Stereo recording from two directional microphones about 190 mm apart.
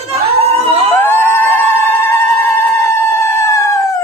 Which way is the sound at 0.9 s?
10° left (ahead or behind).